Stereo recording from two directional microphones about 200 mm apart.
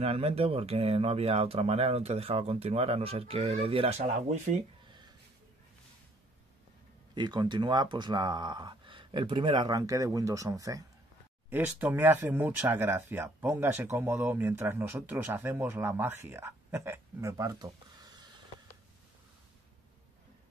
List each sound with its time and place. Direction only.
0.0 s speech: 30° right (ahead or behind)
7.2 s speech: 20° right (ahead or behind)